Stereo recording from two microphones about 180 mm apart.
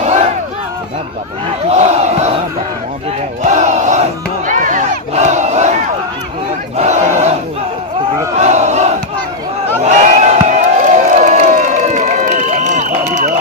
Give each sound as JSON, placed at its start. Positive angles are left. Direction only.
{"t": 1.7, "sound": "battle cry", "side_deg": -40}
{"t": 3.4, "sound": "battle cry", "side_deg": -40}
{"t": 8.4, "sound": "crowd", "side_deg": -40}
{"t": 9.8, "sound": "crowd", "side_deg": -40}